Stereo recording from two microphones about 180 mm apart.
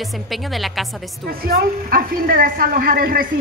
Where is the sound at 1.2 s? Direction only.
55° right (ahead or behind).